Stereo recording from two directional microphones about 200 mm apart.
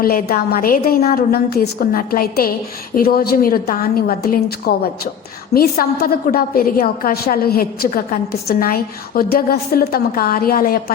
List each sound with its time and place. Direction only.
0.0 s a woman's voice: 50° left (ahead or behind)